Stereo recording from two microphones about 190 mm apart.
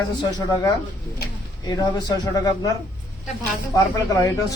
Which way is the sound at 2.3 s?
20° left (ahead or behind).